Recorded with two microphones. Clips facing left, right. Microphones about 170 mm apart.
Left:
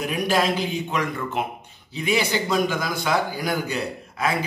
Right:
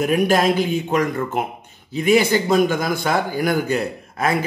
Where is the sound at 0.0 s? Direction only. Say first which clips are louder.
Right 6 dB; 50° right (ahead or behind).